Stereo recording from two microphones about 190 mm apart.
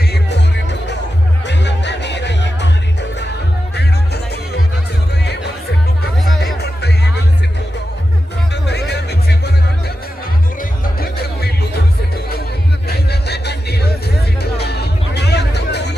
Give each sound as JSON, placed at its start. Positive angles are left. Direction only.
{"t": 0.1, "sound": "music", "side_deg": 65}
{"t": 6.6, "sound": "music", "side_deg": 60}
{"t": 8.6, "sound": "music", "side_deg": 60}
{"t": 10.6, "sound": "music", "side_deg": 55}
{"t": 12.9, "sound": "music", "side_deg": 60}